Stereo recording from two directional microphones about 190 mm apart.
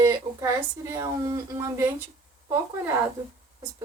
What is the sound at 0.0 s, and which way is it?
Speech, 15° right (ahead or behind).